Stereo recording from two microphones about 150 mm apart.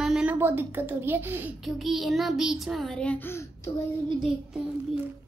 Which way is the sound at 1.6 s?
Centre (ahead or behind).